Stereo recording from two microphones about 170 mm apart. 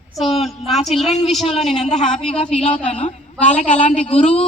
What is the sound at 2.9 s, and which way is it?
A woman's voice, 40° left (ahead or behind).